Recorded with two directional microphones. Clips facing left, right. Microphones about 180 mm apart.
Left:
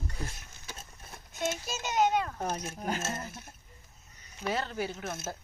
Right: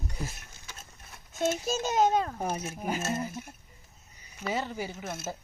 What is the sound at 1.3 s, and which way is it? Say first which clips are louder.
A child's voice: right 6 dB; 30° right (ahead or behind).